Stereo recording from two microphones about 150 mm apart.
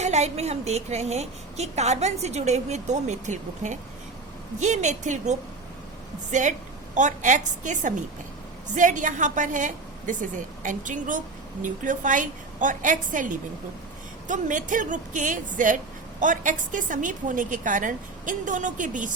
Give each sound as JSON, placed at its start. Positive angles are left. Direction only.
{"t": 0.0, "sound": "a woman's voice", "side_deg": -50}